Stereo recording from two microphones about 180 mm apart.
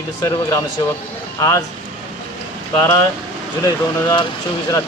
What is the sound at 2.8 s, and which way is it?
Speech, 20° left (ahead or behind).